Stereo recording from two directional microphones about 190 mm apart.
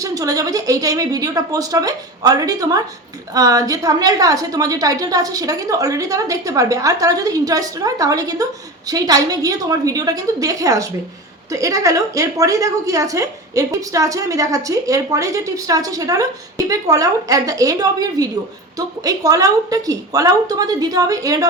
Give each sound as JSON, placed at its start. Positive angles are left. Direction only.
{"t": 0.0, "sound": "a woman's voice", "side_deg": -20}